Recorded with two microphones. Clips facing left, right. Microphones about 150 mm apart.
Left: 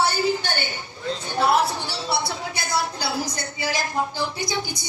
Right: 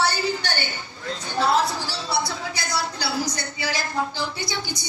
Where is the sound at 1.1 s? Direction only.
20° left (ahead or behind).